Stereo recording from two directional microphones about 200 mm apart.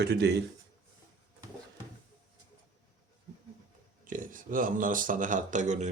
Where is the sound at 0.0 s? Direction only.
55° right (ahead or behind).